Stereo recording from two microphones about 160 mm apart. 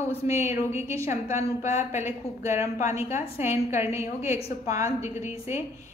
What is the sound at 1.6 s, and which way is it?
Speech, 45° left (ahead or behind).